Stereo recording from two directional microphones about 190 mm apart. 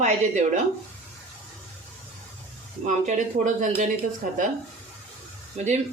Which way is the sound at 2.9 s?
40° right (ahead or behind).